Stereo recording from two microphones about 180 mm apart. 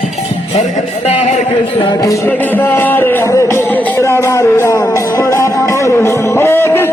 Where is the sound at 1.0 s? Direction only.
35° left (ahead or behind).